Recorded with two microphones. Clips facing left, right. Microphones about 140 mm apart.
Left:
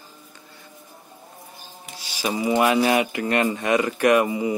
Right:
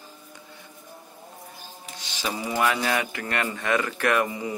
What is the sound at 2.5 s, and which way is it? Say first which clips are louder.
Speech: left 6 dB; 20° left (ahead or behind).